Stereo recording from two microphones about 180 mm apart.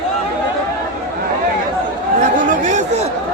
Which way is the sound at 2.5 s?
45° right (ahead or behind).